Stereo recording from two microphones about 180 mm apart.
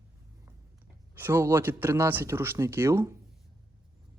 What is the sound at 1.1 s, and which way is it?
A woman's voice, 10° right (ahead or behind).